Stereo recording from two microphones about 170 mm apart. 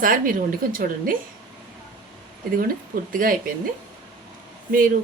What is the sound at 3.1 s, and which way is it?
Speech, 55° right (ahead or behind).